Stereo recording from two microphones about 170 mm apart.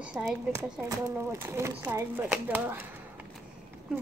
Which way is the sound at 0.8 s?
15° right (ahead or behind).